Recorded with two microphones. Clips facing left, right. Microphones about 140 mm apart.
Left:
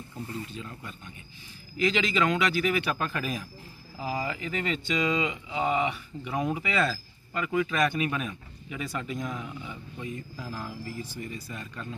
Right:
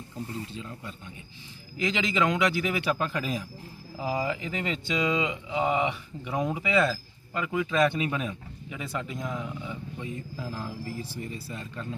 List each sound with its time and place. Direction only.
0.5 s speech: 20° right (ahead or behind)